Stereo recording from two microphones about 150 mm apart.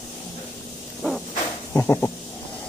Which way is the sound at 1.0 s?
Centre (ahead or behind).